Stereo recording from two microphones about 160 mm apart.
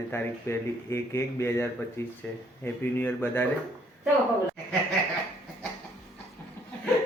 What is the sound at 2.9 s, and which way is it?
Speech, 15° left (ahead or behind).